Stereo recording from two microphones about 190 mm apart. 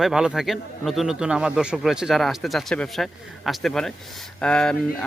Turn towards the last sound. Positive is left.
turn(degrees=5)  # may be behind; listen again after turning